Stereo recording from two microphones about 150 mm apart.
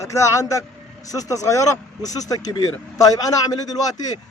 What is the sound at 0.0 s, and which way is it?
Speech, 20° left (ahead or behind).